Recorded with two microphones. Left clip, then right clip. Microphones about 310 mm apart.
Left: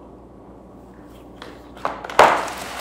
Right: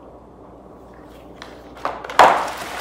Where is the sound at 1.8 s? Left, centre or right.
Centre.